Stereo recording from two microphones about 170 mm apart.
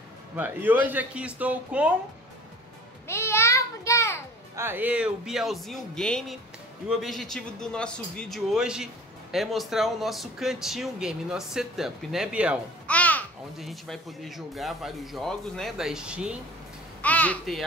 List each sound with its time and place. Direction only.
0.4 s speech: 10° right (ahead or behind)
3.1 s a sound: 15° left (ahead or behind)
4.6 s speech: 10° right (ahead or behind)
12.8 s babbling: 10° left (ahead or behind)
13.6 s speech: centre (ahead or behind)
17.0 s a child's voice: 10° left (ahead or behind)